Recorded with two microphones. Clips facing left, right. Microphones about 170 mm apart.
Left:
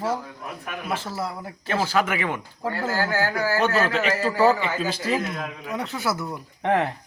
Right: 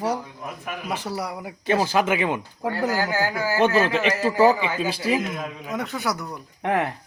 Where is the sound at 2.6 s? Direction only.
15° right (ahead or behind).